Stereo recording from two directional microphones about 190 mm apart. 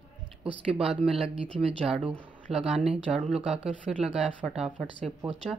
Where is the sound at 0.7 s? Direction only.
30° right (ahead or behind).